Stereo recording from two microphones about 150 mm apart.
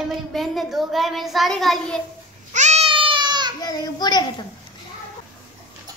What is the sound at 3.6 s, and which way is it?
Speech, 25° left (ahead or behind).